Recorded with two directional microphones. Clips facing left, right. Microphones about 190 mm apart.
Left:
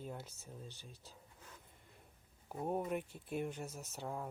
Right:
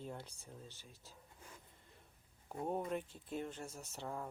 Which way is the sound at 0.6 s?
20° left (ahead or behind).